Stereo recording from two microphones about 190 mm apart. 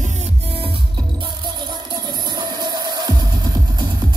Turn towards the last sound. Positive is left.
turn(degrees=-20)  # may be behind; listen again after turning